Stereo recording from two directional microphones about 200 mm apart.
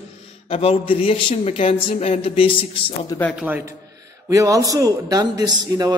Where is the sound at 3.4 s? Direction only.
10° right (ahead or behind).